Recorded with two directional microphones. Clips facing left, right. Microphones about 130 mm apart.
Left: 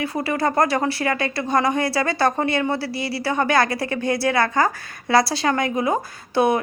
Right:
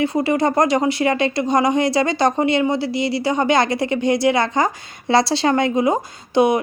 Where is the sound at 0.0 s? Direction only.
25° right (ahead or behind).